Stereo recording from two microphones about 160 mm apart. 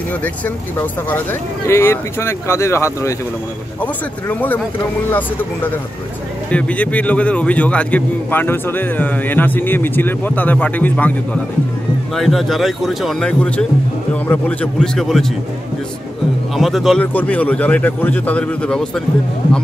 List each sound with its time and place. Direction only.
1.7 s a man's voice: 15° left (ahead or behind)
12.2 s speech: centre (ahead or behind)
16.5 s a man's voice: centre (ahead or behind)